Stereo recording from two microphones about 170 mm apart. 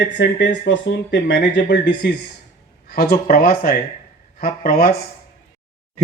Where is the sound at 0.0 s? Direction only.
90° left.